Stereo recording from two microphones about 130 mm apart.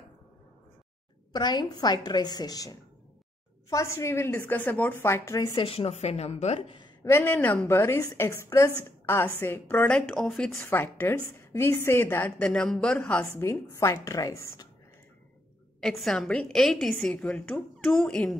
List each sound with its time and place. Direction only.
1.3 s a woman's voice: 35° left (ahead or behind)
5.5 s a woman's voice: 40° left (ahead or behind)
7.0 s a woman's voice: 20° left (ahead or behind)
10.6 s a woman's voice: 15° left (ahead or behind)
12.4 s a woman's voice: 5° left (ahead or behind)
13.3 s a woman's voice: 20° left (ahead or behind)
15.8 s a woman's voice: centre (ahead or behind)